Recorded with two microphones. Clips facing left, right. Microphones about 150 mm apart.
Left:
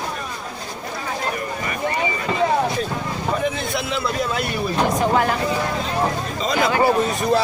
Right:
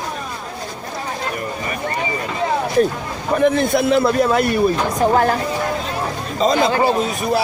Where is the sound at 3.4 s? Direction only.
50° right (ahead or behind).